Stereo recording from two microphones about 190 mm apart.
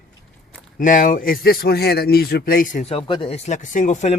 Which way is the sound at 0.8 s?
45° left (ahead or behind).